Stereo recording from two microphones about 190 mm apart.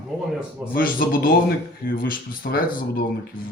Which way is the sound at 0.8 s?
50° left (ahead or behind).